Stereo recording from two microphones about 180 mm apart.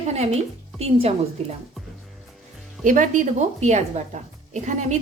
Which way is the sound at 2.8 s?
45° right (ahead or behind).